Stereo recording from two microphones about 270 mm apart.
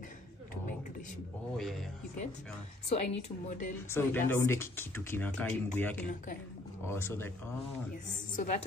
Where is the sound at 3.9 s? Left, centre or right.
Centre.